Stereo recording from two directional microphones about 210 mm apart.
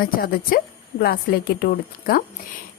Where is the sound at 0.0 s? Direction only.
45° left (ahead or behind).